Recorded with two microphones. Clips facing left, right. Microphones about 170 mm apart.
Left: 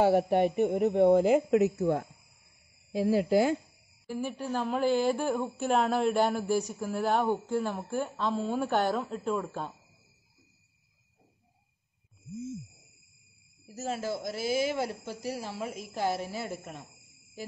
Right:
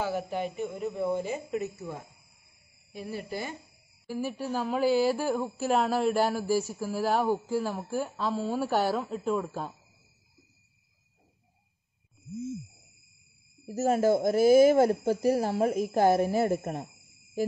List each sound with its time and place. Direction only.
0.0 s a woman's voice: 65° left (ahead or behind)
2.9 s speech: 90° left
4.1 s speech: 5° right (ahead or behind)
13.7 s speech: 45° right (ahead or behind)